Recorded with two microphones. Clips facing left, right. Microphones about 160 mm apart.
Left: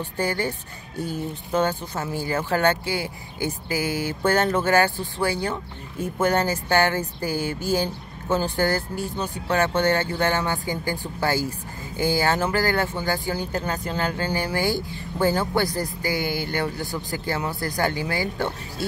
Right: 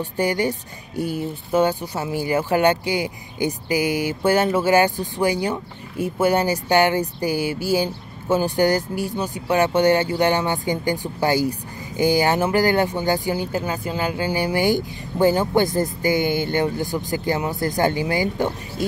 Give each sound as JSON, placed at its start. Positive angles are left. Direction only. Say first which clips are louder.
{"t": 0.0, "sound": "speech", "louder": "right 4 dB", "side_deg": -15}